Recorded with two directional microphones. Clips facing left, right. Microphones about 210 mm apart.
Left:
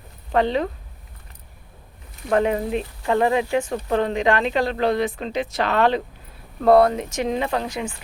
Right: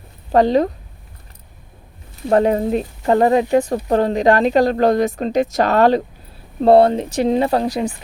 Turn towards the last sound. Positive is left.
turn(degrees=-35)  # may be behind; listen again after turning